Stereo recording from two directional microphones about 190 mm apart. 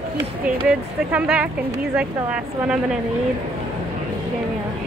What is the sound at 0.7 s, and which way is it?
Speech, 5° right (ahead or behind).